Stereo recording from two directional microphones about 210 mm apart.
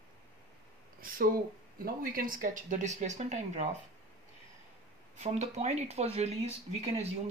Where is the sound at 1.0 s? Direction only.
40° right (ahead or behind).